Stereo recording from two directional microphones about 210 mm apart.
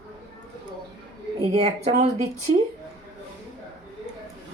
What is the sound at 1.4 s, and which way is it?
Speech, 30° right (ahead or behind).